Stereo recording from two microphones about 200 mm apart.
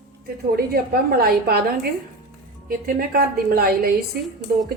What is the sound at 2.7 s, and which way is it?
A woman's voice, 50° right (ahead or behind).